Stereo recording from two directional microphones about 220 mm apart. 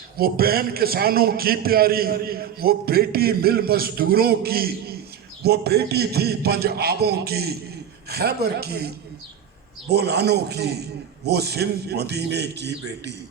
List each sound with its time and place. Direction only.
0.2 s a man's voice: 45° right (ahead or behind)
9.9 s a man's voice: 50° right (ahead or behind)